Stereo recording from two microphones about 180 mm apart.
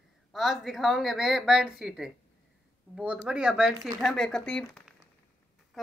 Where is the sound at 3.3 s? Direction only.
5° right (ahead or behind).